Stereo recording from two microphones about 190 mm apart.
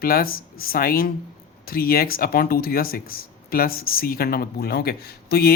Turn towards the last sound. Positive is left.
turn(degrees=55)  # may be behind; listen again after turning